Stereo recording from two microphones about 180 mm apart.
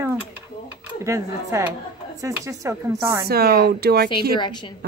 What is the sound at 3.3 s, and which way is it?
Speech, 60° right (ahead or behind).